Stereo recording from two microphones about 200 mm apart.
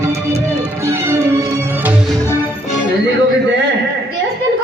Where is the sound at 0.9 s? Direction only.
15° right (ahead or behind).